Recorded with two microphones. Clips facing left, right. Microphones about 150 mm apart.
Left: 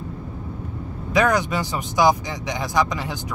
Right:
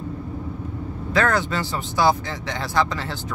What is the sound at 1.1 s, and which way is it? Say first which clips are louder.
Speech: left 2 dB; 15° left (ahead or behind).